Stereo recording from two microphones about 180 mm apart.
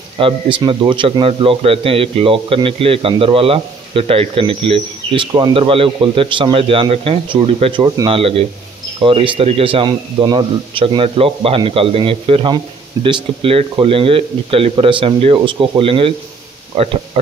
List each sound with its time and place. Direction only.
0.2 s a man's voice: 25° right (ahead or behind)